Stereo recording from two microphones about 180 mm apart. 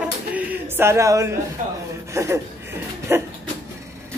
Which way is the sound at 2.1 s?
15° right (ahead or behind).